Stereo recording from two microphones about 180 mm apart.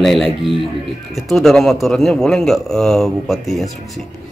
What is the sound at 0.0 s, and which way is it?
Speech, centre (ahead or behind).